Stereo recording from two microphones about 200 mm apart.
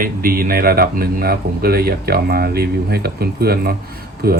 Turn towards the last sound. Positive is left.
turn(degrees=-50)  # may be behind; listen again after turning